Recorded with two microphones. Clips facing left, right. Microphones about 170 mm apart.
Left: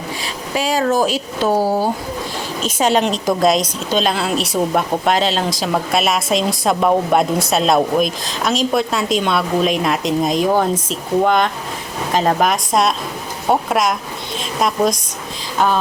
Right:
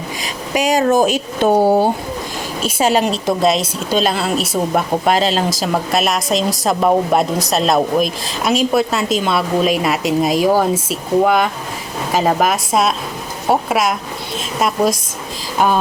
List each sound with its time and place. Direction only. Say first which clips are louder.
0.5 s speech: right 3 dB; 15° right (ahead or behind)
2.6 s speech: right 1 dB; 10° right (ahead or behind)
15.5 s a sound: right 1 dB; 10° right (ahead or behind)